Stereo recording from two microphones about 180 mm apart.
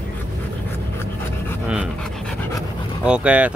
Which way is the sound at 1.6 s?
5° right (ahead or behind).